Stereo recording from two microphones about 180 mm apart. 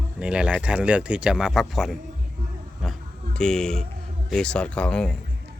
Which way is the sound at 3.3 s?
5° left (ahead or behind).